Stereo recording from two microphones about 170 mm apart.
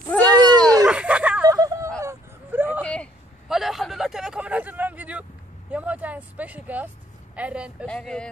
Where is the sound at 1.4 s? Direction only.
20° right (ahead or behind).